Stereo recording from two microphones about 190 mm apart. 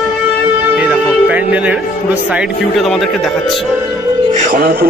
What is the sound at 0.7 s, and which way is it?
Music, 5° right (ahead or behind).